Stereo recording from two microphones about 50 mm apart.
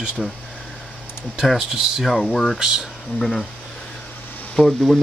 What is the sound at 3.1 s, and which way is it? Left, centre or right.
Speech, centre.